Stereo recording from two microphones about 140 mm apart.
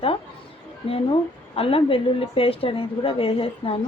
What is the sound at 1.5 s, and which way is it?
A woman's voice, 40° left (ahead or behind).